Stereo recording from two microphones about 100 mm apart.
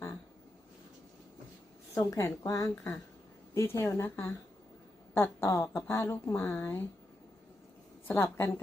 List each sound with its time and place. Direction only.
2.0 s speech: 25° left (ahead or behind)
5.1 s speech: 25° left (ahead or behind)
8.0 s a woman's voice: 20° left (ahead or behind)